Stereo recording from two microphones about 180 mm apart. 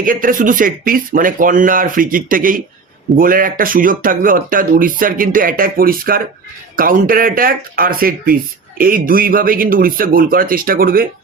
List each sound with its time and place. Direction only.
0.0 s speech: 50° right (ahead or behind)